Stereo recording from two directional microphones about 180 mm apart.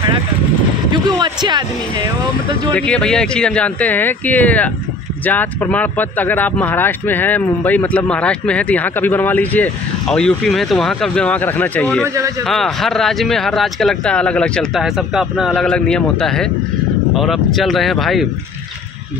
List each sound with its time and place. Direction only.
0.9 s speech: 25° right (ahead or behind)
2.7 s speech: 5° left (ahead or behind)